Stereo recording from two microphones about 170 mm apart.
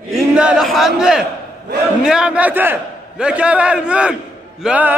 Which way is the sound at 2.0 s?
5° right (ahead or behind).